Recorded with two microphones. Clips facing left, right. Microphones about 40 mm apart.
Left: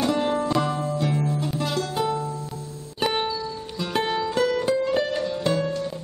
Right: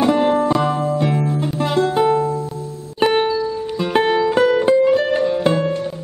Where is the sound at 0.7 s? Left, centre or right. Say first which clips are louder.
Right 6 dB; right.